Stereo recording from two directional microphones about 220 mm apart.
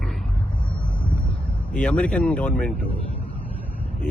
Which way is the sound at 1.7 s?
5° left (ahead or behind).